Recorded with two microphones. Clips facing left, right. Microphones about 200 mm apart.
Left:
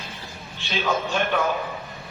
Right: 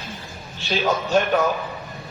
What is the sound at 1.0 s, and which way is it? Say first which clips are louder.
Speech: right 5 dB; 40° right (ahead or behind).